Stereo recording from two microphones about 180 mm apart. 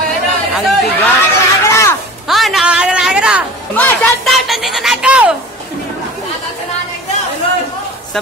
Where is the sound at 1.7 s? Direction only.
15° left (ahead or behind).